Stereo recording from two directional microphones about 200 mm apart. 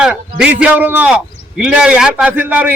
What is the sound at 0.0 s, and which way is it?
A man's voice, 5° right (ahead or behind).